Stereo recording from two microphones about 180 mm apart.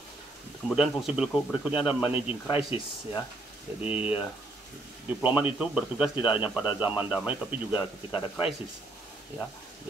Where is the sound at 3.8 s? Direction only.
10° right (ahead or behind).